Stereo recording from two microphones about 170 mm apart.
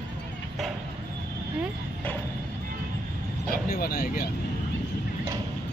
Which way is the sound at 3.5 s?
60° left (ahead or behind).